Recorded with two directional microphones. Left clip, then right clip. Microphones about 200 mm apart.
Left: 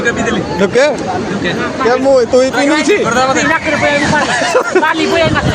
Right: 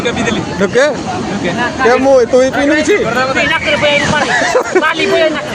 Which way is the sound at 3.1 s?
55° left (ahead or behind).